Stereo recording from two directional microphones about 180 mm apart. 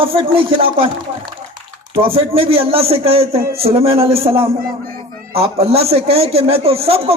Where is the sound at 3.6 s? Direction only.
30° right (ahead or behind).